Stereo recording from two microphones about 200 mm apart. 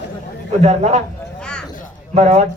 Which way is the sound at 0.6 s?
35° right (ahead or behind).